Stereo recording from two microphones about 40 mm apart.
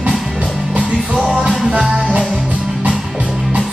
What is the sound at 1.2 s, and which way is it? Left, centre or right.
Music, right.